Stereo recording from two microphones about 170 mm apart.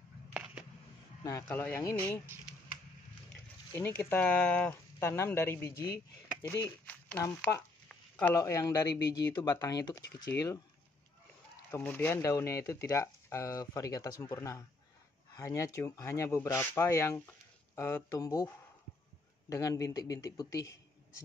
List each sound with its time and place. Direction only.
1.2 s speech: 15° left (ahead or behind)
3.7 s speech: 10° left (ahead or behind)
11.7 s speech: 10° left (ahead or behind)
19.5 s speech: 20° left (ahead or behind)